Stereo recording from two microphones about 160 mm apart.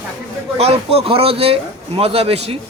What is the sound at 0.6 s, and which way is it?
Speech, 40° right (ahead or behind).